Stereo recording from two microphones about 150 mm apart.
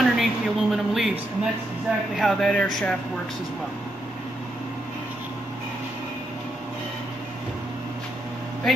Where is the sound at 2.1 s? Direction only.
Centre (ahead or behind).